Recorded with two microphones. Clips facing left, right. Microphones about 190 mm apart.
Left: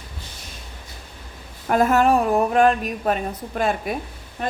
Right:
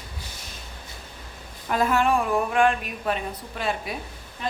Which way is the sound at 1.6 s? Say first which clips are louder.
Left 5 dB; 45° left (ahead or behind).